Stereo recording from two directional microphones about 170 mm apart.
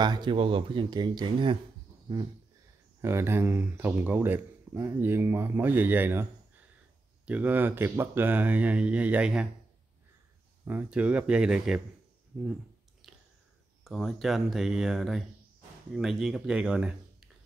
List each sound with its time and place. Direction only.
0.0 s speech: 25° right (ahead or behind)
3.0 s speech: 15° right (ahead or behind)
7.2 s speech: 10° right (ahead or behind)
10.6 s speech: 10° right (ahead or behind)
13.0 s a sound: centre (ahead or behind)
13.8 s speech: centre (ahead or behind)